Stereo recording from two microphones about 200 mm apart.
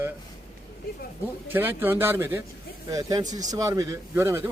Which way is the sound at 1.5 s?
10° right (ahead or behind).